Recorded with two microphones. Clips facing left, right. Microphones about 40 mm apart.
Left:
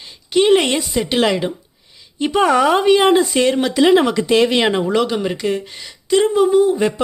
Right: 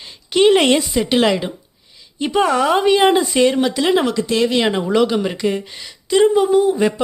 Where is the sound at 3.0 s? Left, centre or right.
Centre.